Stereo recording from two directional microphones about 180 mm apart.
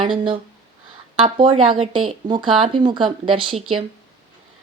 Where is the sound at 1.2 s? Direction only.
30° right (ahead or behind).